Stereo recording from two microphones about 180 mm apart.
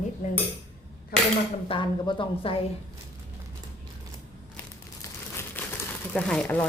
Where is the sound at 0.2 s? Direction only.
45° left (ahead or behind).